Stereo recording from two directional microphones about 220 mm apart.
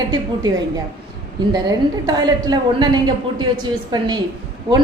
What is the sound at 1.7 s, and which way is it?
A woman's voice, 20° right (ahead or behind).